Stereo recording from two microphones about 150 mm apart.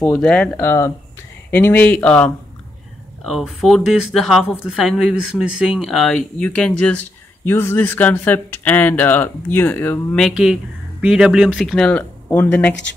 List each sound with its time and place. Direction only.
0.0 s speech: 5° left (ahead or behind)
0.6 s speech: 20° left (ahead or behind)
10.2 s speech: 5° right (ahead or behind)